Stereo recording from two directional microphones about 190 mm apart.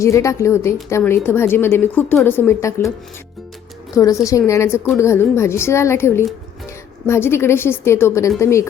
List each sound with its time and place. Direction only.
0.0 s a woman's voice: 15° left (ahead or behind)
3.9 s a woman's voice: 15° left (ahead or behind)